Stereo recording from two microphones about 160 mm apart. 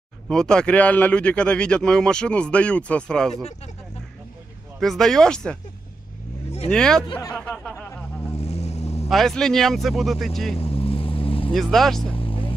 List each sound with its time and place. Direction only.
0.3 s speech: 5° left (ahead or behind)
4.7 s speech: centre (ahead or behind)
6.7 s speech: 5° left (ahead or behind)
7.1 s speech: 20° left (ahead or behind)
7.3 s speech: 5° left (ahead or behind)
8.4 s vehicle: 40° left (ahead or behind)
9.1 s speech: 5° left (ahead or behind)
10.6 s vehicle: 35° left (ahead or behind)
11.5 s speech: centre (ahead or behind)
12.1 s vehicle: 35° left (ahead or behind)